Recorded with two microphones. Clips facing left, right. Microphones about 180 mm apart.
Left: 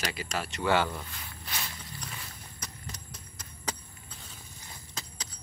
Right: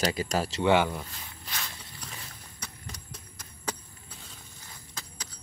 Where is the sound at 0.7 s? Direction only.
15° right (ahead or behind).